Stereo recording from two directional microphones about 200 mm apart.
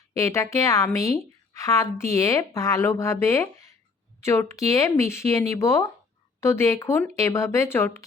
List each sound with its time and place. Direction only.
0.2 s a woman's voice: 15° left (ahead or behind)